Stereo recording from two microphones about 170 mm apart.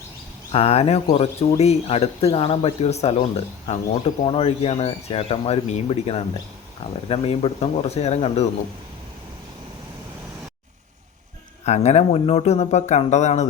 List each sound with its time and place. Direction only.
0.5 s speech: 35° left (ahead or behind)
11.6 s speech: 40° left (ahead or behind)